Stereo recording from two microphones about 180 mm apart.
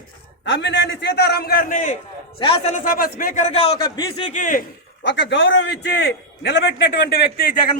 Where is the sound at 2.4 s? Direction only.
30° left (ahead or behind).